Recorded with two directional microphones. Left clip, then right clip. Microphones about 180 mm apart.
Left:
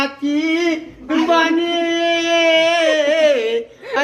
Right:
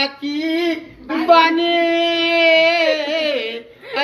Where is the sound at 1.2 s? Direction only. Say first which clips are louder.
Right 4 dB; 20° left (ahead or behind).